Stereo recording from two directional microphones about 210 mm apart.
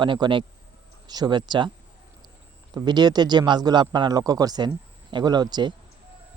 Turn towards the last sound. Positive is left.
turn(degrees=-20)  # may be behind; listen again after turning